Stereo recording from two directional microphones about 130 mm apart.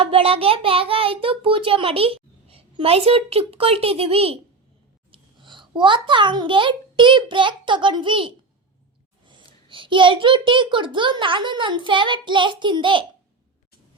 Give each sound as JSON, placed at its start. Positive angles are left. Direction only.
{"t": 0.0, "sound": "a child's voice", "side_deg": -45}
{"t": 5.1, "sound": "a child's voice", "side_deg": -40}
{"t": 9.5, "sound": "a child's voice", "side_deg": -40}